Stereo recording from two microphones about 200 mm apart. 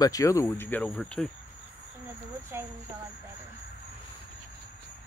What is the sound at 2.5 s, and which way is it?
Speech, 10° right (ahead or behind).